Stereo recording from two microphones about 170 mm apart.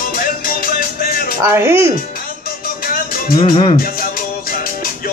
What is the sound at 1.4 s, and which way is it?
Speech, 15° right (ahead or behind).